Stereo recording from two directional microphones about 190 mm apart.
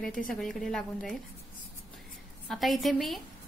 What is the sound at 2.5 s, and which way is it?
Speech, centre (ahead or behind).